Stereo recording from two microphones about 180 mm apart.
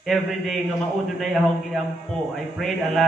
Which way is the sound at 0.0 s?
Centre (ahead or behind).